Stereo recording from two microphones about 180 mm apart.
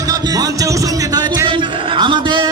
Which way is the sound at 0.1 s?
20° right (ahead or behind).